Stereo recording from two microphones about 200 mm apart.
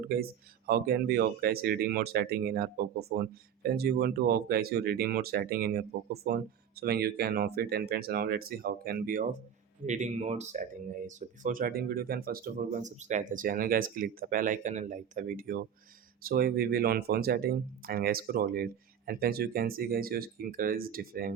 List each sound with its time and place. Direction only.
0.0 s speech: 50° right (ahead or behind)
9.8 s speech: 35° right (ahead or behind)